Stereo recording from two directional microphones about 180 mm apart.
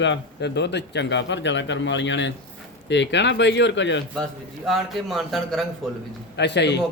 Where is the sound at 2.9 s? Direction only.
80° left.